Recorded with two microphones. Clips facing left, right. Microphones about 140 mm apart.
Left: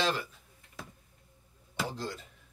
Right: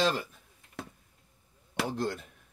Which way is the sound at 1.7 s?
60° right (ahead or behind).